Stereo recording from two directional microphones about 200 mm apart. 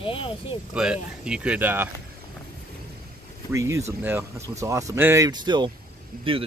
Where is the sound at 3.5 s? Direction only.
15° right (ahead or behind).